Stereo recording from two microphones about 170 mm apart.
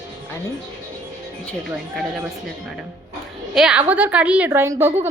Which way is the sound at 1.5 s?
Centre (ahead or behind).